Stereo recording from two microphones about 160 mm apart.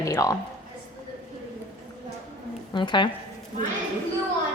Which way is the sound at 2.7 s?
30° left (ahead or behind).